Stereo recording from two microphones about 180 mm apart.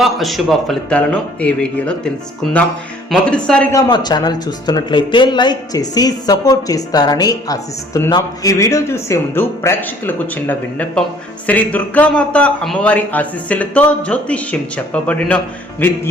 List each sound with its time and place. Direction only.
0.0 s a man's voice: centre (ahead or behind)
3.7 s a man's voice: 20° left (ahead or behind)